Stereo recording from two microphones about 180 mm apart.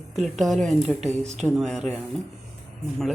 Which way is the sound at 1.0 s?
40° right (ahead or behind).